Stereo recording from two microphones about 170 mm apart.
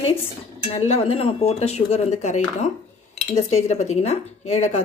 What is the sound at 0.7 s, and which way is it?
Speech, 35° left (ahead or behind).